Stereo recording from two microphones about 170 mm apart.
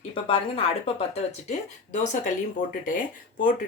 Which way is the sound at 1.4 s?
45° left (ahead or behind).